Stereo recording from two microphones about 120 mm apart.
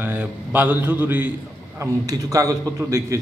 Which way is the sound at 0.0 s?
15° right (ahead or behind).